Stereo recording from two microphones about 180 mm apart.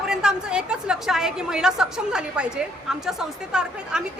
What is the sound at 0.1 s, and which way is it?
A woman's voice, 5° right (ahead or behind).